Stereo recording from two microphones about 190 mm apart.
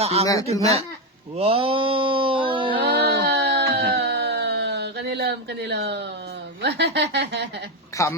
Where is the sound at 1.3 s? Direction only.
30° right (ahead or behind).